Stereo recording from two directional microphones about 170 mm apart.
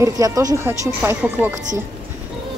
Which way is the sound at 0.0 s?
20° right (ahead or behind).